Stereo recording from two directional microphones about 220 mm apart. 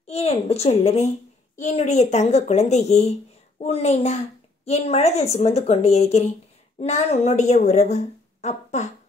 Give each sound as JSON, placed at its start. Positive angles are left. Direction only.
{"t": 0.0, "sound": "a woman's voice", "side_deg": 30}